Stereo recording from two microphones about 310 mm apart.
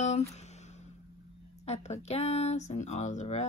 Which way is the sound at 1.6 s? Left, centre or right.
Centre.